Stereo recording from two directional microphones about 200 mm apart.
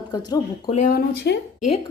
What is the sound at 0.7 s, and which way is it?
Speech, 45° left (ahead or behind).